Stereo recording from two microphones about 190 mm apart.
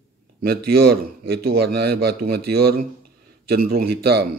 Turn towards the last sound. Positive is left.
turn(degrees=-55)  # may be behind; listen again after turning